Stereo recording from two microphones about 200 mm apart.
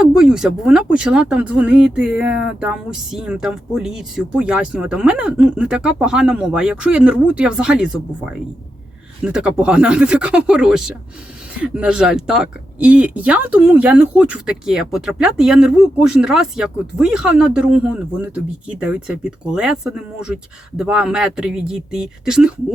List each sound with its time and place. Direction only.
0.0 s speech: 5° right (ahead or behind)